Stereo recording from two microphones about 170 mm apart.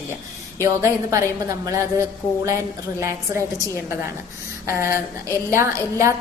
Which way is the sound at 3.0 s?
15° right (ahead or behind).